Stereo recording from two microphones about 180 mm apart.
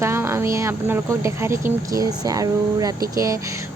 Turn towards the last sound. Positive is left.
turn(degrees=-15)  # may be behind; listen again after turning